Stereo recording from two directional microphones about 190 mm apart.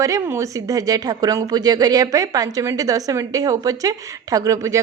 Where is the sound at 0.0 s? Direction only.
15° right (ahead or behind).